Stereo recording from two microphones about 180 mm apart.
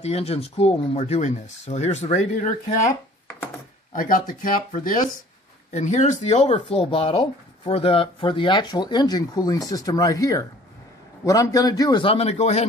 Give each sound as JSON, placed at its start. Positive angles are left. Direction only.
{"t": 0.0, "sound": "speech", "side_deg": 35}
{"t": 3.9, "sound": "speech", "side_deg": 50}